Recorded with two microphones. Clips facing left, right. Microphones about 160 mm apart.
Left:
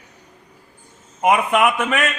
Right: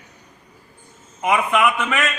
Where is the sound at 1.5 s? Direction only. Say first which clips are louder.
Left 2 dB; 50° left (ahead or behind).